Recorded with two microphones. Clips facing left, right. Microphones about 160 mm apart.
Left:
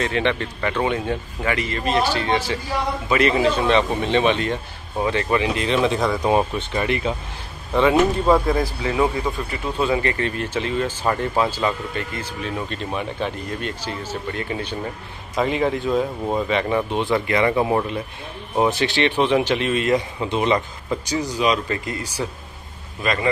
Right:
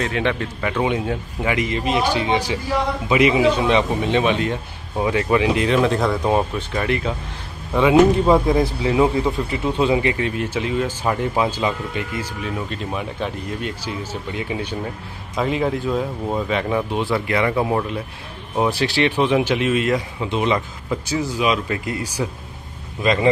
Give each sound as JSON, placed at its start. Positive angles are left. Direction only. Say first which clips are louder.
{"t": 0.0, "sound": "a man's voice", "louder": "even", "side_deg": -5}
{"t": 7.7, "sound": "a man's voice", "louder": "right 2 dB", "side_deg": -10}
{"t": 8.3, "sound": "a man's voice", "louder": "right 2 dB", "side_deg": -20}